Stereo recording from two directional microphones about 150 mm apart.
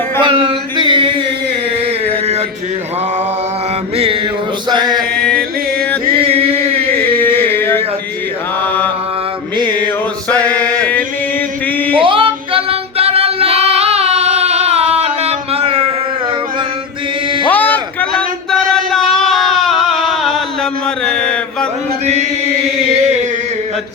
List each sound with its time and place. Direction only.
0.2 s mantra: 35° right (ahead or behind)
3.9 s mantra: 40° right (ahead or behind)
4.7 s chant: 30° right (ahead or behind)
7.2 s music: 15° left (ahead or behind)
10.2 s chant: 10° left (ahead or behind)
11.9 s female singing: 35° right (ahead or behind)
17.5 s a sound: 10° left (ahead or behind)
21.0 s mantra: 5° left (ahead or behind)